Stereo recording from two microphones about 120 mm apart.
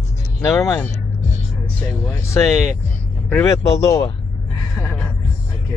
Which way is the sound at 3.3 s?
20° left (ahead or behind).